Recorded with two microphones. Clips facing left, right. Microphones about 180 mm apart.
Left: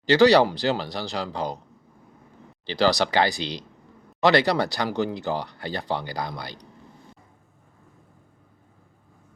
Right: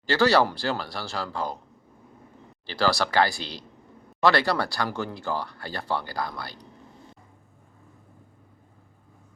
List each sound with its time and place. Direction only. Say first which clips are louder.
0.0 s speech: left 5 dB; 20° left (ahead or behind)
2.7 s speech: left 2 dB; 20° left (ahead or behind)